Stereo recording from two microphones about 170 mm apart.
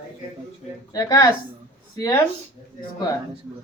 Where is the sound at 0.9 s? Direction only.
20° left (ahead or behind).